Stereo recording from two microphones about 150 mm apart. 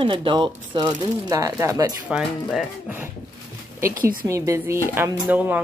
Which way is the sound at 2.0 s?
5° right (ahead or behind).